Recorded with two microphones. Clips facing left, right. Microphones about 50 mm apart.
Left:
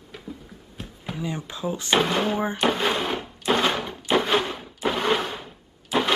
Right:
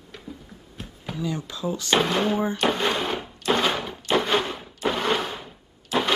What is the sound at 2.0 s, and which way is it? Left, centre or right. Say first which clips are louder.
Speech: even; centre.